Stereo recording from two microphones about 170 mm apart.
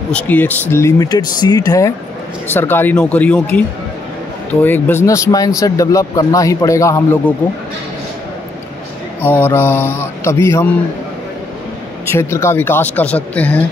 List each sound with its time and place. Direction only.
0.1 s speech: 10° left (ahead or behind)
9.2 s speech: 10° left (ahead or behind)
12.1 s speech: 15° left (ahead or behind)